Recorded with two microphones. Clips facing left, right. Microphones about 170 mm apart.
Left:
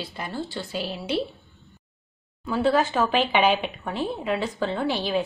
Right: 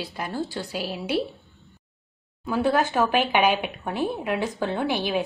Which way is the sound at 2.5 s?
10° right (ahead or behind).